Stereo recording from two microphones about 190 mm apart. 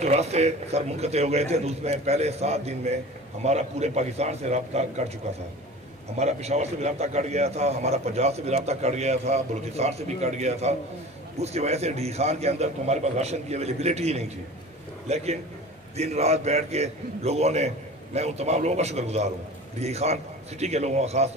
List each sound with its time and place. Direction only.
0.0 s a man's voice: 35° right (ahead or behind)
6.1 s a man's voice: 35° right (ahead or behind)